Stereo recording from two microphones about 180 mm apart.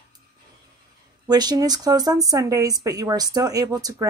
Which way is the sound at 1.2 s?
20° right (ahead or behind).